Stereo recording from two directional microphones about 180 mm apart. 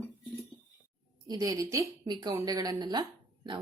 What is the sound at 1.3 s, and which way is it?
A woman's voice, 20° right (ahead or behind).